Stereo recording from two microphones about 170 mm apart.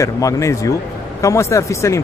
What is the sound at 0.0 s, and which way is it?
Speech, 20° left (ahead or behind).